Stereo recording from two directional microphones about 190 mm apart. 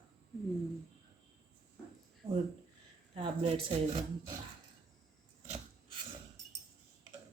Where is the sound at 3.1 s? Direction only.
25° right (ahead or behind).